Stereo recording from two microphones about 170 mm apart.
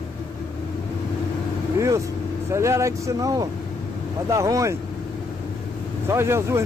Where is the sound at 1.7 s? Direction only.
15° right (ahead or behind).